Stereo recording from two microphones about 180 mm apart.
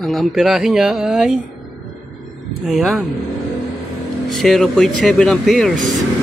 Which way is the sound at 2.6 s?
Centre (ahead or behind).